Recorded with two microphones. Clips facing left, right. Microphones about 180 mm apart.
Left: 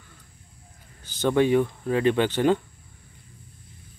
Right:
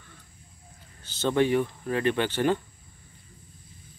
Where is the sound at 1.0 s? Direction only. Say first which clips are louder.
Left 3 dB; 15° left (ahead or behind).